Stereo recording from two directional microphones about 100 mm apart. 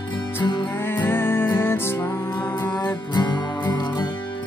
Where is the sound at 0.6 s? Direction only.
20° left (ahead or behind).